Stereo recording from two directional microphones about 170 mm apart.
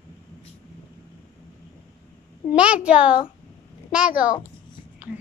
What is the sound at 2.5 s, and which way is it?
Speech, 5° right (ahead or behind).